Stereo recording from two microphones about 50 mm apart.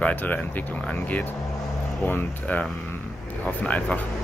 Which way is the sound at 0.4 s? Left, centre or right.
Left.